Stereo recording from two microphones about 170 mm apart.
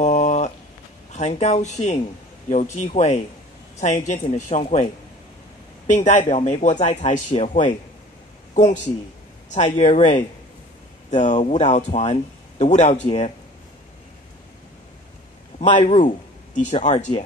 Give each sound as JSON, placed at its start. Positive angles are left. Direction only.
{"t": 0.0, "sound": "a sound", "side_deg": 45}
{"t": 1.1, "sound": "speech", "side_deg": 40}
{"t": 5.9, "sound": "speech", "side_deg": 45}
{"t": 9.6, "sound": "speech", "side_deg": 35}
{"t": 15.7, "sound": "speech", "side_deg": 40}